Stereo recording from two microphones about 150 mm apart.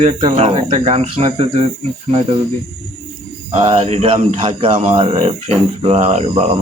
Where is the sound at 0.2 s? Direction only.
40° right (ahead or behind).